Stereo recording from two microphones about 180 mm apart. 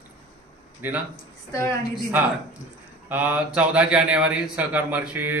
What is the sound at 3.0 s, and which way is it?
Speech, 10° right (ahead or behind).